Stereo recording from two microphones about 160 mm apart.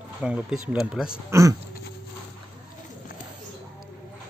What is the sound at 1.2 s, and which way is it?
Speech, 20° right (ahead or behind).